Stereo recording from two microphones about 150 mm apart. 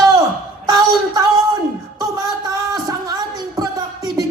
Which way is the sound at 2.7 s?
25° right (ahead or behind).